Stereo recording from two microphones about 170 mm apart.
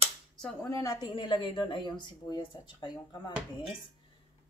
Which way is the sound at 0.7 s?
20° left (ahead or behind).